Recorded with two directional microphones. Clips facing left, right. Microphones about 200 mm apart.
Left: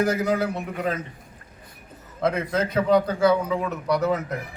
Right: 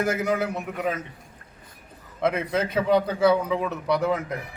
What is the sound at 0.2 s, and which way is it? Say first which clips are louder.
Speech: left 2 dB; 25° right (ahead or behind).